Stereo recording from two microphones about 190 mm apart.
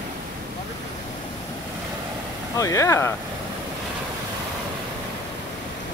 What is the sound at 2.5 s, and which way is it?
Speech, 15° left (ahead or behind).